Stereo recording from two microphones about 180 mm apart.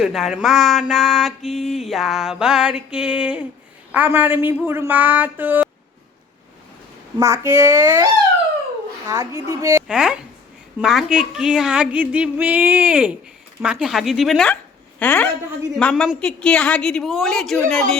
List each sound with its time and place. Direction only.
0.0 s a woman's voice: centre (ahead or behind)
7.2 s a woman's voice: 15° right (ahead or behind)
9.8 s a woman's voice: 5° right (ahead or behind)